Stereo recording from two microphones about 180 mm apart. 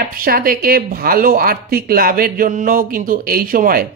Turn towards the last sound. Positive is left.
turn(degrees=-50)  # may be behind; listen again after turning